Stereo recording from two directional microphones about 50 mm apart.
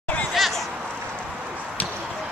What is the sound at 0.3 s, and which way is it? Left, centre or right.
Chatter, centre.